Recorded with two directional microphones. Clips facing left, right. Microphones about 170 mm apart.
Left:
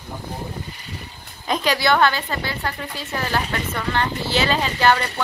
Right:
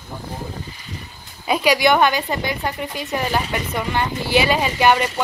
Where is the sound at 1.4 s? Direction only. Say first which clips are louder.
Right 3 dB; 10° right (ahead or behind).